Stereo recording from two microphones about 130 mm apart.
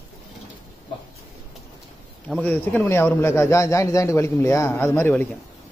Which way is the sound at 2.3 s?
10° left (ahead or behind).